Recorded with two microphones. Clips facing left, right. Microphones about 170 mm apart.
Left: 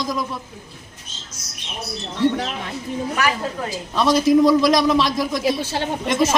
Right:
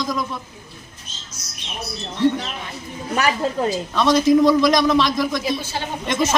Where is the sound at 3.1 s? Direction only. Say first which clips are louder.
Right 6 dB; 25° right (ahead or behind).